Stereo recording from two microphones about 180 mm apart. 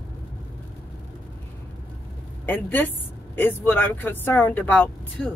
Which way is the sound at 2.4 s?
10° left (ahead or behind).